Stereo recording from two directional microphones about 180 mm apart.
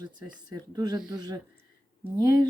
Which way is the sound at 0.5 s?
20° right (ahead or behind).